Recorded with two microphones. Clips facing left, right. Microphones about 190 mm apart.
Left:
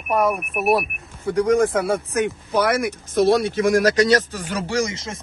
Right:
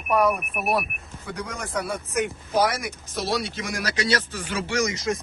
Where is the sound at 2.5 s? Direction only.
60° left (ahead or behind).